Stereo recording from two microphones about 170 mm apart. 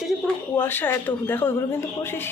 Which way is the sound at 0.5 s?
10° left (ahead or behind).